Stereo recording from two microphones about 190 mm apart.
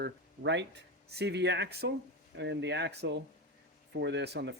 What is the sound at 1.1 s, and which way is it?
Speech, 65° right (ahead or behind).